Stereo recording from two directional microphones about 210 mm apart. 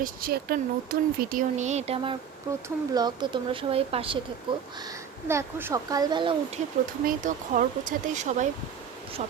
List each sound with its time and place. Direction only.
0.0 s speech: 45° right (ahead or behind)
2.6 s speech: 20° right (ahead or behind)
5.3 s speech: 10° right (ahead or behind)
7.0 s speech: 40° right (ahead or behind)